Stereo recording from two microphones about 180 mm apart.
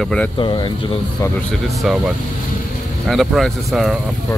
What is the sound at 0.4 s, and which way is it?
Speech, 25° left (ahead or behind).